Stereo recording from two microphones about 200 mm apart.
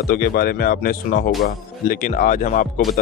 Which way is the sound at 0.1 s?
50° left (ahead or behind).